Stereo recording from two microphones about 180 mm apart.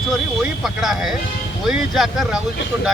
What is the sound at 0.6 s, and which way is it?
Speech, centre (ahead or behind).